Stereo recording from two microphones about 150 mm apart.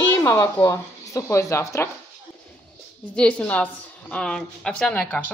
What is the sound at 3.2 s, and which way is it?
A woman's voice, 10° left (ahead or behind).